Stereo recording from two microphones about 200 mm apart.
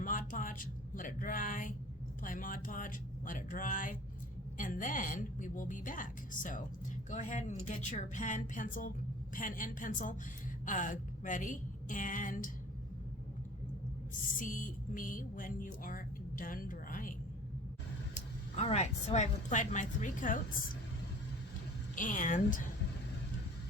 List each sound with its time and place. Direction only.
0.0 s a sound: 40° left (ahead or behind)
2.2 s a woman's voice: 40° left (ahead or behind)
14.3 s speech: 40° left (ahead or behind)
18.1 s a woman's voice: 35° left (ahead or behind)
21.9 s a woman's voice: 40° left (ahead or behind)